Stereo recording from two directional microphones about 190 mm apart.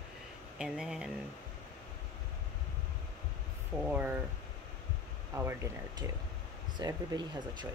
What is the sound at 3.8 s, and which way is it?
Speech, 10° right (ahead or behind).